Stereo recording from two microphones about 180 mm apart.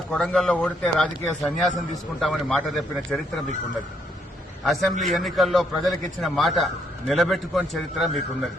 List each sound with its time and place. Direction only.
0.1 s speech: 5° left (ahead or behind)
4.6 s speech: centre (ahead or behind)